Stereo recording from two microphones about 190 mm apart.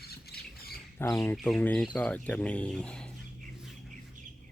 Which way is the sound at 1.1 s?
5° left (ahead or behind).